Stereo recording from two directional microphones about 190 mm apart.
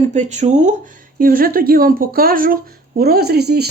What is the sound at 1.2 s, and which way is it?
A woman's voice, 50° right (ahead or behind).